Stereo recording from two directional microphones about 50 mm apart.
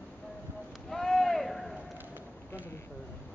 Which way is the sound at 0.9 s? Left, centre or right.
Centre.